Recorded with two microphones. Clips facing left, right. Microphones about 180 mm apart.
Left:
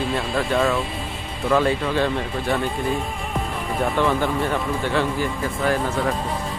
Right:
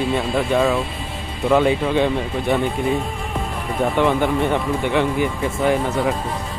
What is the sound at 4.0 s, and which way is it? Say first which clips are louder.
Speech: right 4 dB; 20° right (ahead or behind).